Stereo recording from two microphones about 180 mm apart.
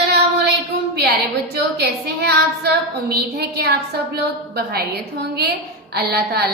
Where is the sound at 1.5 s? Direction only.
60° right (ahead or behind).